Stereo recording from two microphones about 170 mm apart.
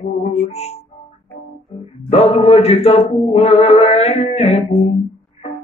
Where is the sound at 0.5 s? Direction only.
40° left (ahead or behind).